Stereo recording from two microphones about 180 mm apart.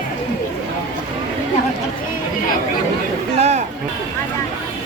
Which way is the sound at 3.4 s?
40° right (ahead or behind).